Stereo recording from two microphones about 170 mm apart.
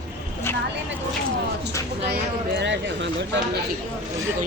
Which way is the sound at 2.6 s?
90° right.